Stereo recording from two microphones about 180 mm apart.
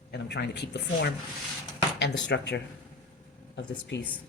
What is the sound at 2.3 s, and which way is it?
Speech, 75° left (ahead or behind).